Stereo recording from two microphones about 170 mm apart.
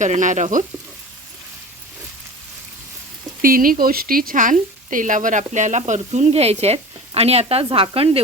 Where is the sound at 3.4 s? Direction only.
55° right (ahead or behind).